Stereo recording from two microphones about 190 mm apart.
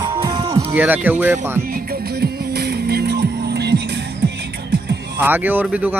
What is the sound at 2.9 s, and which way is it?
Music, 60° right (ahead or behind).